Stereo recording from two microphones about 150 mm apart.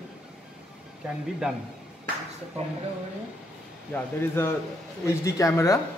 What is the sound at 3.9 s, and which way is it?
Speech, 15° left (ahead or behind).